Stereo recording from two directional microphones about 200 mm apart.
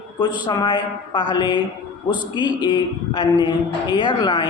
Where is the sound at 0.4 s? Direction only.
20° left (ahead or behind).